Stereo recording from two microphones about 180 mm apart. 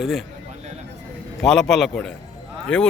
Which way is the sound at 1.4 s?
Centre (ahead or behind).